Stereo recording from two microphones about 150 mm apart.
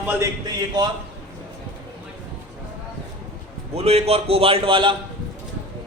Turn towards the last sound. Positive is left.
turn(degrees=-35)  # may be behind; listen again after turning